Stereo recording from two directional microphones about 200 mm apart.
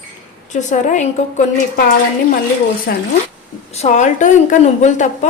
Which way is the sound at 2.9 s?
55° left (ahead or behind).